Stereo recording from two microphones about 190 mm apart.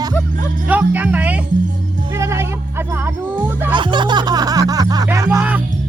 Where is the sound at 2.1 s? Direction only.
15° right (ahead or behind).